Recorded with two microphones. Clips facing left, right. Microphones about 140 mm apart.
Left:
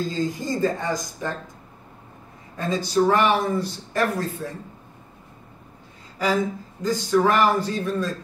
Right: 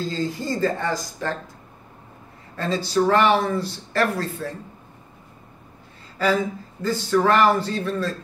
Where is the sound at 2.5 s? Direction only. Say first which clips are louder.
Even; 15° left (ahead or behind).